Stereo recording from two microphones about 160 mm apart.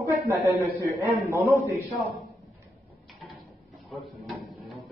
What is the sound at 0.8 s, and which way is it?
Speech, 20° right (ahead or behind).